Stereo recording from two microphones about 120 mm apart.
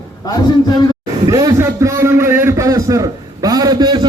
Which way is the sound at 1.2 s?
30° right (ahead or behind).